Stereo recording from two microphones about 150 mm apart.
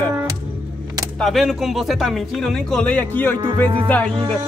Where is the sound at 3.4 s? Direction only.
35° right (ahead or behind).